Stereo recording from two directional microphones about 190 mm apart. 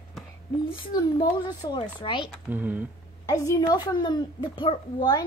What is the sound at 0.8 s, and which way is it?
A woman's voice, 20° left (ahead or behind).